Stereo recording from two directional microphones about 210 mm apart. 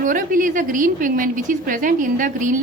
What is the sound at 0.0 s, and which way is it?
A woman's voice, 40° right (ahead or behind).